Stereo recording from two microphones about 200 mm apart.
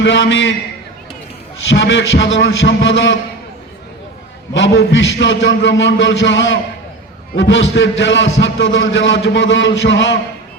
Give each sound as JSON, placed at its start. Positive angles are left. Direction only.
{"t": 0.0, "sound": "a man's voice", "side_deg": 65}
{"t": 1.7, "sound": "a man's voice", "side_deg": 60}
{"t": 4.5, "sound": "a man's voice", "side_deg": 60}